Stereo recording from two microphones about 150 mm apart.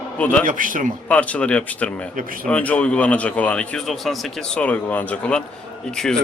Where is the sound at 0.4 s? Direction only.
60° right (ahead or behind).